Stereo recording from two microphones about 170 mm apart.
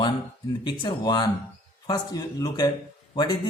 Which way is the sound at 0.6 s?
25° left (ahead or behind).